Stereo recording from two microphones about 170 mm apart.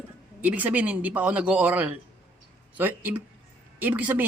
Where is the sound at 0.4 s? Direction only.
10° right (ahead or behind).